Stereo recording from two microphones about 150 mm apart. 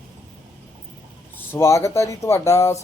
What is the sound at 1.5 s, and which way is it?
Speech, 20° left (ahead or behind).